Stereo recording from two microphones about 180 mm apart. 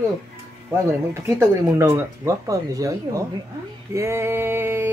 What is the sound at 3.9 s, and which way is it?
Speech, 15° right (ahead or behind).